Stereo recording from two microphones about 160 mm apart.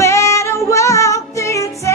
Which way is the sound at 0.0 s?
15° left (ahead or behind).